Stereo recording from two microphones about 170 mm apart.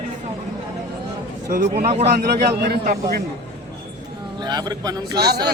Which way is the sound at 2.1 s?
70° right (ahead or behind).